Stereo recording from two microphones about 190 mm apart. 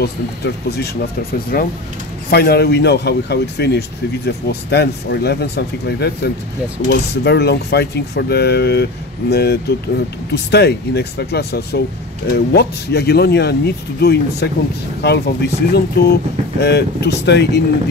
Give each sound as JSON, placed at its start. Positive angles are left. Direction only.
{"t": 0.0, "sound": "speech", "side_deg": 60}